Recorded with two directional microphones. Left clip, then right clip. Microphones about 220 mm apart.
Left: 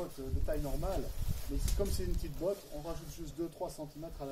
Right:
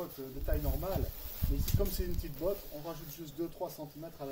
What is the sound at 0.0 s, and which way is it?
Speech, 5° right (ahead or behind).